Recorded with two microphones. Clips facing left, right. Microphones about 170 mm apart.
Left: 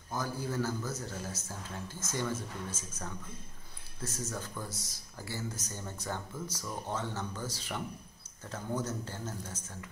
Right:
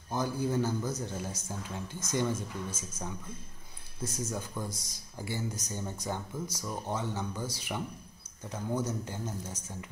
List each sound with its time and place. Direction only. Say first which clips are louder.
0.1 s a man's voice: right 5 dB; 20° right (ahead or behind)